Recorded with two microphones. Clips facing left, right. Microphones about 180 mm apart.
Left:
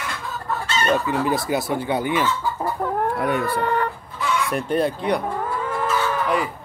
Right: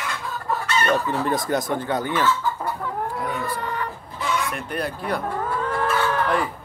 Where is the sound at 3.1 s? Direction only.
65° left (ahead or behind).